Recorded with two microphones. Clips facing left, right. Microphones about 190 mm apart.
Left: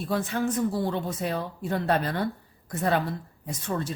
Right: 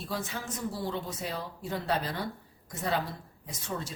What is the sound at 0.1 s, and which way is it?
A woman's voice, 55° left (ahead or behind).